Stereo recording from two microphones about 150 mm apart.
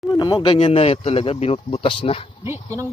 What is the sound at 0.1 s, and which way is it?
Speech, 25° left (ahead or behind).